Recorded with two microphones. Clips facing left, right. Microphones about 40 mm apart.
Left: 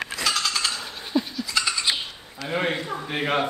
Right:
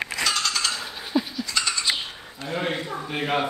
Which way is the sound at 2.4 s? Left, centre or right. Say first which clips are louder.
Left 2 dB; left.